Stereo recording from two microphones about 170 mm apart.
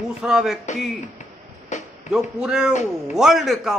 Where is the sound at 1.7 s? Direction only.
45° left (ahead or behind).